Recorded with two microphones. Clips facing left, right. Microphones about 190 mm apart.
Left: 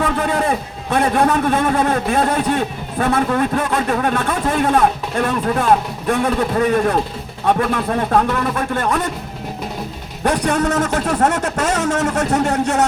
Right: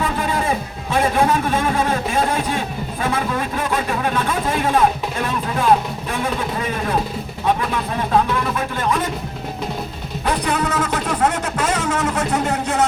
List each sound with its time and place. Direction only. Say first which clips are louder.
0.0 s a sound: left 3 dB; 60° left (ahead or behind)
0.9 s a man's voice: left 2 dB; 60° left (ahead or behind)
6.1 s a man's voice: left 7 dB; 60° left (ahead or behind)
10.2 s speech: left 4 dB; 45° left (ahead or behind)